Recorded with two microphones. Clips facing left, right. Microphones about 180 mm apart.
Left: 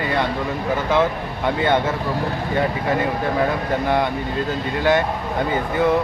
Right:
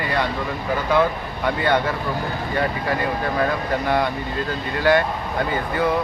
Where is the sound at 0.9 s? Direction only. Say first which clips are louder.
Right 1 dB; 20° left (ahead or behind).